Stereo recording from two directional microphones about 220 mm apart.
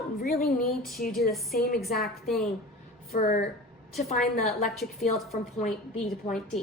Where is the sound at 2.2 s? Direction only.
Centre (ahead or behind).